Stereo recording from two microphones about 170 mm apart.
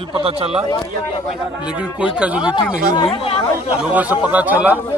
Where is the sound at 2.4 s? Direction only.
30° left (ahead or behind).